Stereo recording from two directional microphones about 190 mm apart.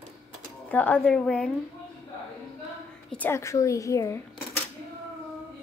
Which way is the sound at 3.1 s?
10° left (ahead or behind).